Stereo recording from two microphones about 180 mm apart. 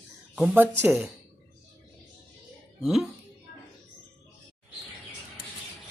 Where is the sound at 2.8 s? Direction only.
Centre (ahead or behind).